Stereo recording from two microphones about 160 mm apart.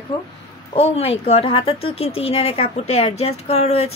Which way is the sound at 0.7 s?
40° left (ahead or behind).